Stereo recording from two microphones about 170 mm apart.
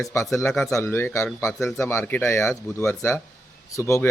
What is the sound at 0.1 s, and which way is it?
Speech, 15° left (ahead or behind).